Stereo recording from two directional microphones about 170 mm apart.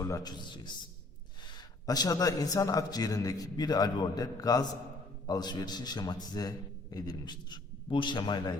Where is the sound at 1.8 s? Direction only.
20° left (ahead or behind).